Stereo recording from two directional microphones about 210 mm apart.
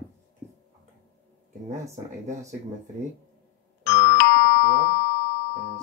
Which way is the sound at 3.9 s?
30° right (ahead or behind).